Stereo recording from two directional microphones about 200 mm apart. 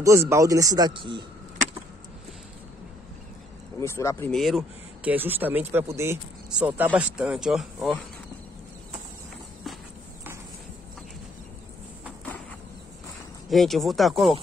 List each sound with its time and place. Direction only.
0.0 s speech: 15° right (ahead or behind)
3.8 s speech: 15° left (ahead or behind)
4.3 s speech: centre (ahead or behind)
13.5 s speech: centre (ahead or behind)